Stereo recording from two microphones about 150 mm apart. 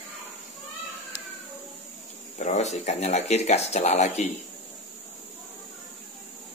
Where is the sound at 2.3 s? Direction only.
50° left (ahead or behind).